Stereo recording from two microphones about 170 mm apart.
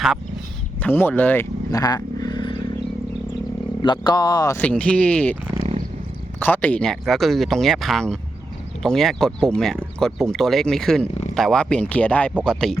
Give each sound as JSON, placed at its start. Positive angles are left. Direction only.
{"t": 0.8, "sound": "speech", "side_deg": 10}
{"t": 1.8, "sound": "vehicle", "side_deg": 25}
{"t": 3.8, "sound": "speech", "side_deg": 25}
{"t": 4.5, "sound": "speech", "side_deg": 5}
{"t": 6.4, "sound": "speech", "side_deg": 10}